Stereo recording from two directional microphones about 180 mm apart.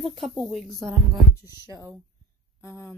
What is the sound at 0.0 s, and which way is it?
Speech, centre (ahead or behind).